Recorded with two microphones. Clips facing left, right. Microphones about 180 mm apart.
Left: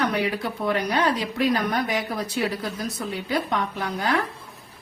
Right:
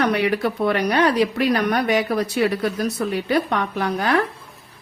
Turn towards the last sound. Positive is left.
turn(degrees=-70)  # may be behind; listen again after turning